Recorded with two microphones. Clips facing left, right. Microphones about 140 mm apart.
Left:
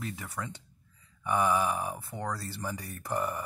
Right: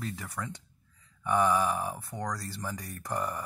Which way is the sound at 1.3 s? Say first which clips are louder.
Right 1 dB; 15° left (ahead or behind).